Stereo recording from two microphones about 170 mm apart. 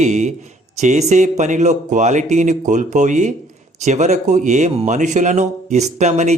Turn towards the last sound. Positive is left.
turn(degrees=-40)  # may be behind; listen again after turning